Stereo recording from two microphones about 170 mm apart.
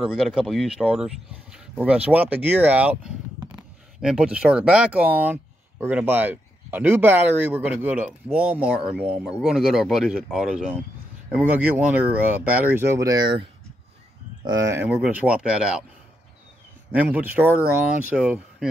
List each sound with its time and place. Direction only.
0.0 s speech: 5° right (ahead or behind); by 14.8 s 25° right (ahead or behind)
14.8 s speech: 10° right (ahead or behind)
16.9 s speech: 10° right (ahead or behind)